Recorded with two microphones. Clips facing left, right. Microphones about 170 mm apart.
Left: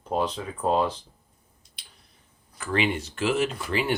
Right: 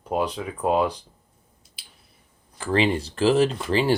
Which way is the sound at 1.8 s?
5° right (ahead or behind).